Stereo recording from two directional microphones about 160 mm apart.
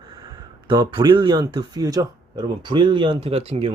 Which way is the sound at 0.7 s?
30° right (ahead or behind).